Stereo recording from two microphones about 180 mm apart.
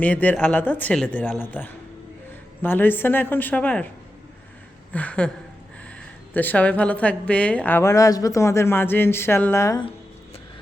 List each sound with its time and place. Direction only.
0.0 s a woman's voice: 10° left (ahead or behind)
4.9 s a woman's voice: 10° left (ahead or behind)
6.3 s a woman's voice: 10° left (ahead or behind)